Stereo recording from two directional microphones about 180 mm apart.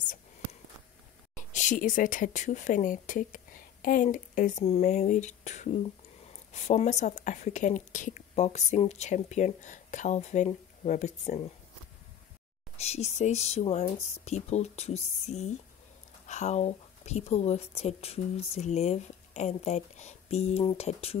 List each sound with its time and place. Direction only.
1.3 s a woman's voice: 40° left (ahead or behind)
12.7 s a woman's voice: 35° left (ahead or behind)